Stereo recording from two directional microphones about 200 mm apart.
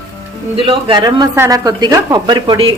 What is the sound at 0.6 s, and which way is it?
Speech, 25° right (ahead or behind).